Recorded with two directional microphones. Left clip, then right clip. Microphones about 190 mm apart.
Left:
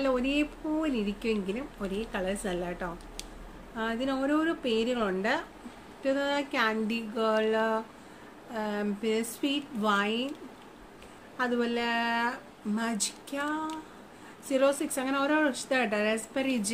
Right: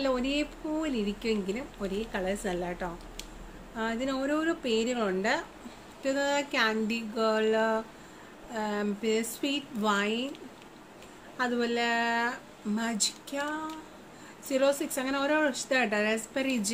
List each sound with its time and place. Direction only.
0.0 s speech: 5° left (ahead or behind)
11.3 s speech: centre (ahead or behind)